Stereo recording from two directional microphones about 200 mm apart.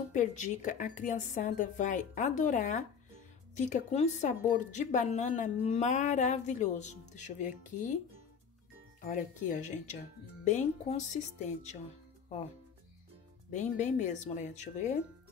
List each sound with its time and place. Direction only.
0.1 s speech: 40° left (ahead or behind)
9.0 s speech: 40° left (ahead or behind)
13.5 s speech: 35° left (ahead or behind)